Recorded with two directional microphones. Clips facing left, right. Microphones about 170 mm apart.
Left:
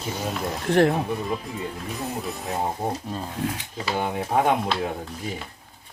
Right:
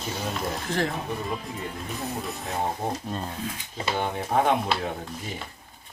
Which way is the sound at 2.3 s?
Centre (ahead or behind).